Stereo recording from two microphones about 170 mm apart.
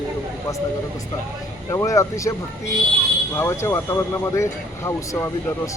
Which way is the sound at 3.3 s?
15° left (ahead or behind).